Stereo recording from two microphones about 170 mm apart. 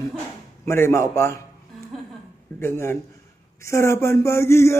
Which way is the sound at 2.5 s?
15° left (ahead or behind).